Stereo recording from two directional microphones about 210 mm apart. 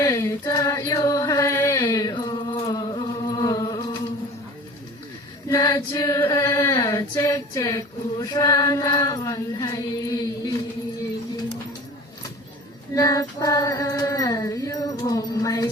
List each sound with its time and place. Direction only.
0.0 s chant: 15° left (ahead or behind)
5.5 s music: 15° left (ahead or behind)
6.3 s a sound: 15° left (ahead or behind)
8.2 s chant: 15° left (ahead or behind)
12.9 s female singing: 15° left (ahead or behind)